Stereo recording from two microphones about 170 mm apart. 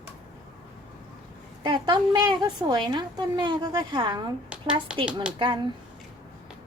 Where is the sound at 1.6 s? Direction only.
25° right (ahead or behind).